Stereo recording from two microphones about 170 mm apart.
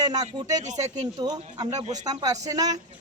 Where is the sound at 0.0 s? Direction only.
20° right (ahead or behind).